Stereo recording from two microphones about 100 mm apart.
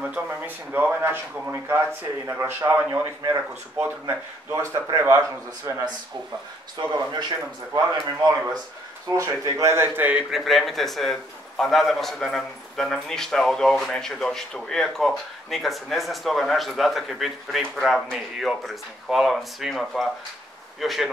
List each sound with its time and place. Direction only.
0.0 s speech: 15° right (ahead or behind)
5.7 s speech: 40° right (ahead or behind)
9.1 s speech: 35° right (ahead or behind); by 10.2 s 15° right (ahead or behind)
10.3 s a man's voice: centre (ahead or behind)